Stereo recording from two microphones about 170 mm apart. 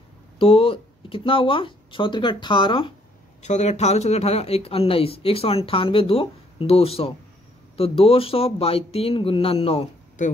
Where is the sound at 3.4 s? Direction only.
40° left (ahead or behind).